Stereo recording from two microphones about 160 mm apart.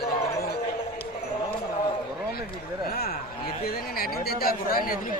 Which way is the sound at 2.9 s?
70° left (ahead or behind).